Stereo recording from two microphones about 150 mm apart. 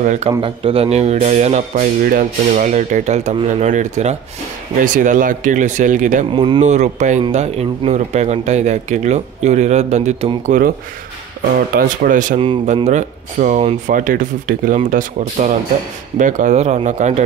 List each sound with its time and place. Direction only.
0.0 s speech: 55° right (ahead or behind)
0.4 s speech: 40° right (ahead or behind); by 6.2 s 60° right (ahead or behind)
6.3 s speech: 30° right (ahead or behind)
6.6 s speech: 55° right (ahead or behind)
10.4 s speech: 60° right (ahead or behind)
11.7 s speech: 65° right (ahead or behind); by 13.9 s 50° right (ahead or behind)
13.9 s speech: 65° right (ahead or behind)